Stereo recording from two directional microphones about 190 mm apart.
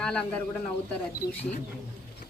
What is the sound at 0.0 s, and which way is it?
Speech, 5° left (ahead or behind).